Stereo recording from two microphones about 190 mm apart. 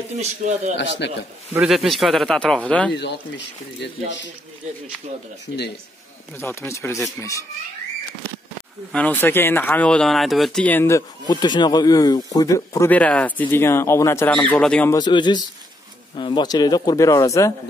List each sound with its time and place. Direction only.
0.2 s a man's voice: 35° right (ahead or behind)
0.7 s speech: 65° left (ahead or behind)
1.5 s speech: 5° right (ahead or behind)
2.9 s speech: 65° left (ahead or behind)
6.3 s speech: 15° left (ahead or behind)
8.9 s speech: 10° left (ahead or behind)
15.0 s speech: 25° left (ahead or behind)